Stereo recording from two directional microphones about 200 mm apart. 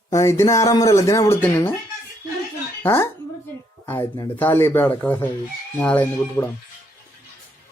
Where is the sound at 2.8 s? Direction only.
10° left (ahead or behind).